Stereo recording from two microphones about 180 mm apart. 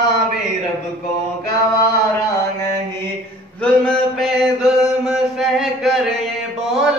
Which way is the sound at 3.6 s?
5° left (ahead or behind).